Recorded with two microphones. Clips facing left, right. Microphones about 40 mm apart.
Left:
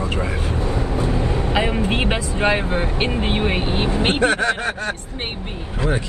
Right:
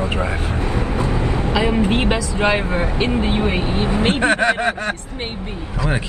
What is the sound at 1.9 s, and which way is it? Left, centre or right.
Speech, left.